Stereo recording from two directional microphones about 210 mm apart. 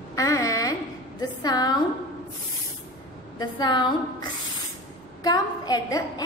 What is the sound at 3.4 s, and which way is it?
Speech, 20° left (ahead or behind).